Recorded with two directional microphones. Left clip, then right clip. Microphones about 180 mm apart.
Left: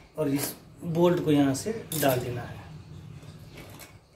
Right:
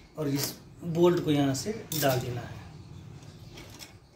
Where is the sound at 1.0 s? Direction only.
20° left (ahead or behind).